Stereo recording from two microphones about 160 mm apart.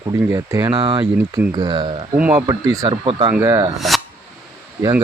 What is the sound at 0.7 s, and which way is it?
Speech, 30° right (ahead or behind).